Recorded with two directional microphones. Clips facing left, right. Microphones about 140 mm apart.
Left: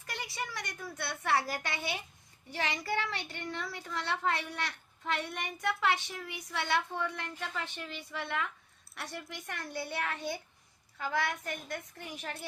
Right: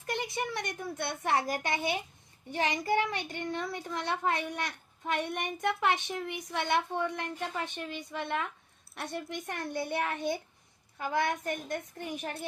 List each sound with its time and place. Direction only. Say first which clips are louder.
0.1 s a child's voice: right 6 dB; 20° right (ahead or behind)